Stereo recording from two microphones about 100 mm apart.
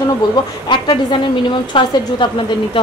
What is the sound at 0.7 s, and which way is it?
A woman's voice, 50° left (ahead or behind).